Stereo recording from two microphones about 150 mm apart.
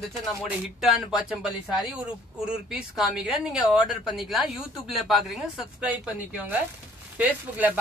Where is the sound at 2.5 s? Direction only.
5° right (ahead or behind).